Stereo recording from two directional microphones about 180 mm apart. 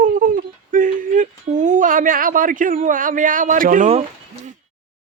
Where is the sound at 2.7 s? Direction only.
45° right (ahead or behind).